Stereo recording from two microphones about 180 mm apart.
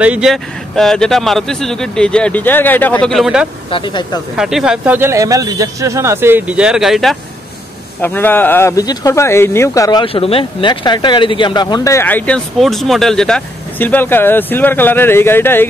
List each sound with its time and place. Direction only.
0.0 s speech: 5° right (ahead or behind)
3.7 s speech: 25° left (ahead or behind)
4.4 s speech: 5° right (ahead or behind)
8.0 s speech: 10° left (ahead or behind)